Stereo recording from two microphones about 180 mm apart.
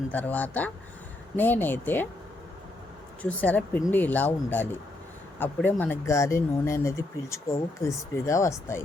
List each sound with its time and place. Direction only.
0.1 s speech: 10° left (ahead or behind)
3.2 s speech: 10° left (ahead or behind)